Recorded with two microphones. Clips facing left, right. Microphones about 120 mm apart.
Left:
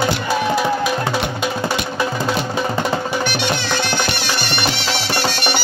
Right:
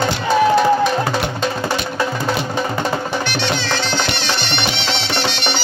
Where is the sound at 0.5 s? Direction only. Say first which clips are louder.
Right 4 dB; 10° left (ahead or behind).